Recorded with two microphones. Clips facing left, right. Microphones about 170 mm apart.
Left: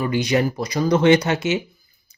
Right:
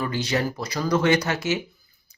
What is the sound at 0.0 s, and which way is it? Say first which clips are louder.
Speech: left 5 dB; 15° left (ahead or behind).